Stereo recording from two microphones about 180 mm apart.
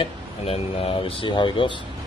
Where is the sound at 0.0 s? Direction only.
30° left (ahead or behind).